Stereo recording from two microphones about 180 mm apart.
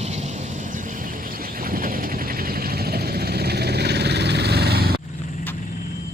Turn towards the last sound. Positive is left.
turn(degrees=-60)  # may be behind; listen again after turning